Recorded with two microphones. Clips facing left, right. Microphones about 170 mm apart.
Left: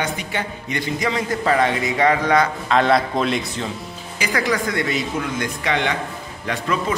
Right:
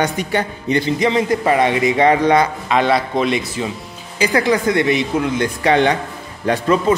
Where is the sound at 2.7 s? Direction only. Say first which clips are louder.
Left 1 dB; centre (ahead or behind).